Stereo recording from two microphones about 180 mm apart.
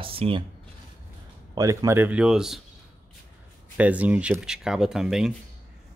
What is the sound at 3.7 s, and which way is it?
Speech, 10° right (ahead or behind).